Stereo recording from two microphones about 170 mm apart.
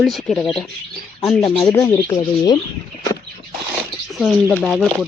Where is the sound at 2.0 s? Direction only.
25° left (ahead or behind).